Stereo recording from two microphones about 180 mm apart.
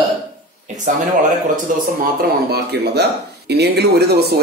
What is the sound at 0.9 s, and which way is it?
Speech, 45° right (ahead or behind).